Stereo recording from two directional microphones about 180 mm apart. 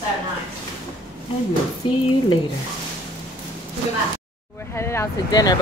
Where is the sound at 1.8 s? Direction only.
30° left (ahead or behind).